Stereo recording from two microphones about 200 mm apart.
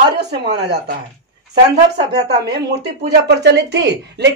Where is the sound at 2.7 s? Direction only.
60° right (ahead or behind).